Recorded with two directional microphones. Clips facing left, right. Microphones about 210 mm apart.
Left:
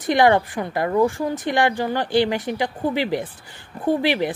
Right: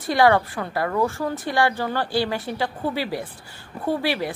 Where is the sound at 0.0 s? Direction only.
20° left (ahead or behind).